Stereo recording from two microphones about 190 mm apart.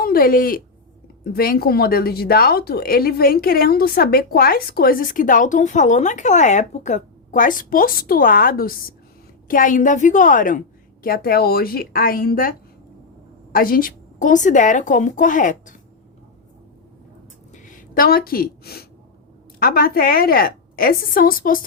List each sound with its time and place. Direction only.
0.0 s speech: 50° left (ahead or behind)
17.5 s a sound: 40° left (ahead or behind)
19.5 s speech: 50° left (ahead or behind)